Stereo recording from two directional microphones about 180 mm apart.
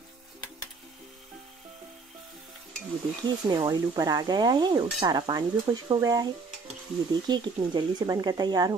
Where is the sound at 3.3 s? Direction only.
25° right (ahead or behind).